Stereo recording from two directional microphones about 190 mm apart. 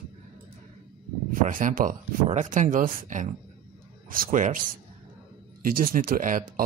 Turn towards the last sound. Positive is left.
turn(degrees=-45)  # may be behind; listen again after turning